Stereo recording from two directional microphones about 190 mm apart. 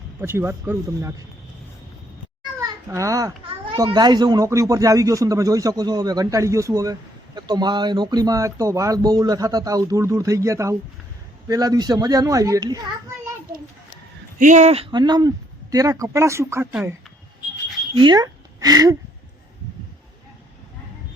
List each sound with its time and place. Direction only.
0.2 s speech: 15° right (ahead or behind)
2.6 s a sound: 15° right (ahead or behind)
3.7 s speech: 25° right (ahead or behind)
14.3 s speech: 40° right (ahead or behind); by 16.9 s 15° right (ahead or behind)
17.9 s speech: 25° right (ahead or behind)